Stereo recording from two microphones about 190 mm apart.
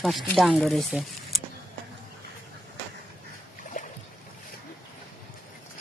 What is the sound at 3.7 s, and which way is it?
Boat, 45° left (ahead or behind).